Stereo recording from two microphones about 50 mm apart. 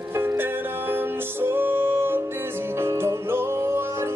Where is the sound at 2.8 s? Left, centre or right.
Right.